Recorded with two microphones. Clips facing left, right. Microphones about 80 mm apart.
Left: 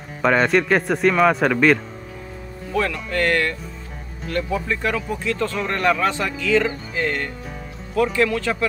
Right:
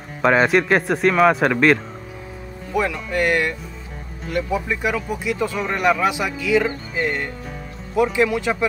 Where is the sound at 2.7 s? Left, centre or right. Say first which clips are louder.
Right 1 dB; centre.